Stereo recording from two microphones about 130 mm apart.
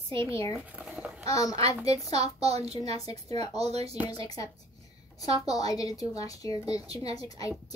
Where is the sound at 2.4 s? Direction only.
55° right (ahead or behind).